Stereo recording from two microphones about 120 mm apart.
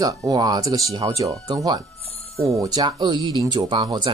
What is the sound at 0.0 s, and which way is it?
Speech, 30° right (ahead or behind).